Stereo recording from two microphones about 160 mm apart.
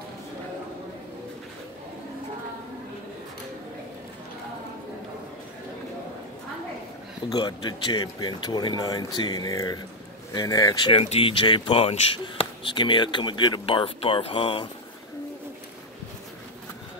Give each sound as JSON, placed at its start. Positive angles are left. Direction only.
{"t": 7.2, "sound": "speech", "side_deg": 25}
{"t": 10.9, "sound": "speech", "side_deg": 35}